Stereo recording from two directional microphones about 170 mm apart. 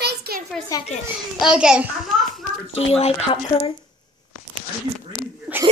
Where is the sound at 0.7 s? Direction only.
20° left (ahead or behind).